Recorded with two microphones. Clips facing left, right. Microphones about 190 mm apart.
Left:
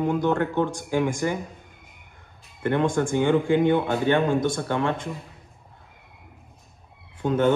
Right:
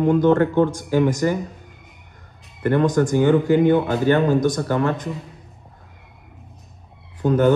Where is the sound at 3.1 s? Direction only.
5° right (ahead or behind).